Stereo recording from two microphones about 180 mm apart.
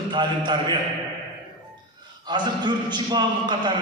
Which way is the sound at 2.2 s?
25° right (ahead or behind).